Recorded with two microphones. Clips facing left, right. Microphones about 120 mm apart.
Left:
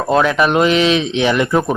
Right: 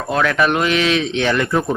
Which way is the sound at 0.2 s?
20° left (ahead or behind).